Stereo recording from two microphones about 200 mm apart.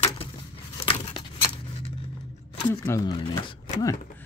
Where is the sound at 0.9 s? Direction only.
25° left (ahead or behind).